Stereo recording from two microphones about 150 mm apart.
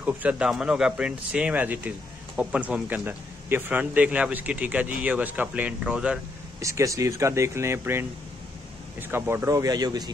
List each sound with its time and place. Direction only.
0.0 s speech: 10° right (ahead or behind)
6.6 s speech: 20° right (ahead or behind)
9.1 s speech: 15° right (ahead or behind)